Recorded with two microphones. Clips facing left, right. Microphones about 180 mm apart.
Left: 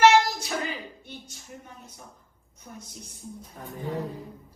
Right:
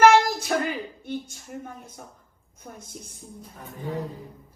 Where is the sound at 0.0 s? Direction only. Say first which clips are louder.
Right 2 dB; 50° right (ahead or behind).